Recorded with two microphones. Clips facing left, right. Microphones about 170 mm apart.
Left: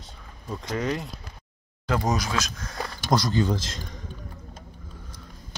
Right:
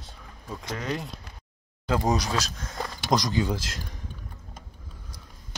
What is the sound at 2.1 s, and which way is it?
Speech, 35° right (ahead or behind).